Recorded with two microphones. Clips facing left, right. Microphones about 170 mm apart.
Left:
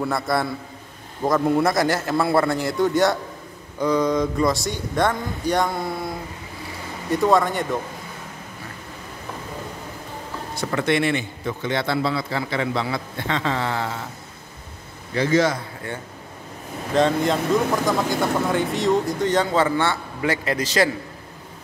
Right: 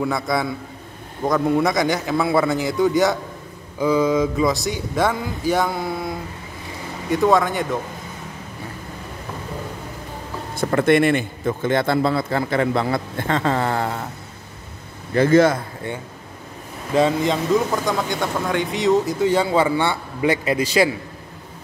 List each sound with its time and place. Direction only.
0.0 s speech: centre (ahead or behind)
10.5 s a man's voice: 50° right (ahead or behind)
15.1 s a man's voice: 50° right (ahead or behind)
16.9 s speech: 5° right (ahead or behind)